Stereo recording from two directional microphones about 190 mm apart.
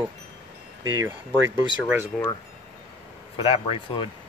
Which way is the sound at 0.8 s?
15° right (ahead or behind).